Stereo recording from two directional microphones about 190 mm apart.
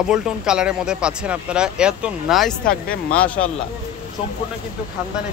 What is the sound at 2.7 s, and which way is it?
Speech, 50° left (ahead or behind).